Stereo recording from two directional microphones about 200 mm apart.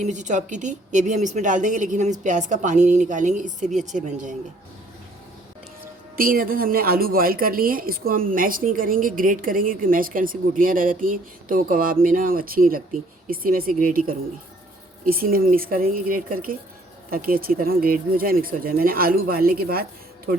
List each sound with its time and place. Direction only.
0.0 s a woman's voice: 35° right (ahead or behind)
6.1 s a woman's voice: 45° right (ahead or behind)